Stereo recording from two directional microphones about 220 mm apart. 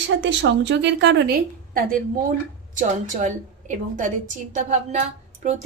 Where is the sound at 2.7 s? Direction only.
35° right (ahead or behind).